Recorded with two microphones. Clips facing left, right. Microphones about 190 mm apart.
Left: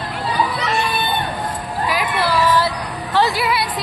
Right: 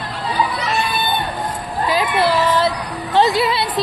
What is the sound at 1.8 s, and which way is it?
Child singing, 25° right (ahead or behind).